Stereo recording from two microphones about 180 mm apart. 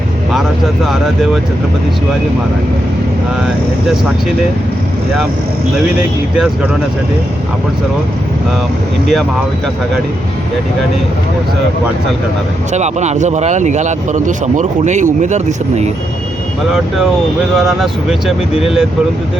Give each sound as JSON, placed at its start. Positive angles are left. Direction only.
{"t": 0.9, "sound": "speech", "side_deg": 0}
{"t": 12.7, "sound": "speech", "side_deg": -40}
{"t": 17.6, "sound": "speech", "side_deg": 0}